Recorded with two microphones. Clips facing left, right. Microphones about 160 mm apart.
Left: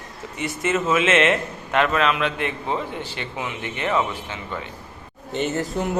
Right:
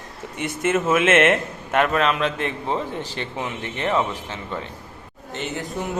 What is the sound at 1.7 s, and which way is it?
A man's voice, 40° right (ahead or behind).